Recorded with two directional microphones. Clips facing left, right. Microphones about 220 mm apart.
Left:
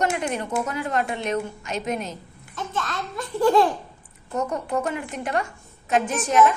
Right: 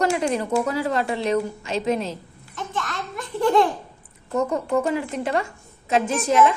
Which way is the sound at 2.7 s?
15° right (ahead or behind).